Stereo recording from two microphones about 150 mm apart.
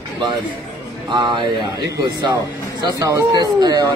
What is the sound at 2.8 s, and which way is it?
Speech, 25° right (ahead or behind).